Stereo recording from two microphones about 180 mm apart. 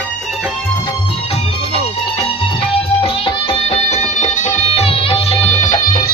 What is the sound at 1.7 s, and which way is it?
Music, 30° left (ahead or behind).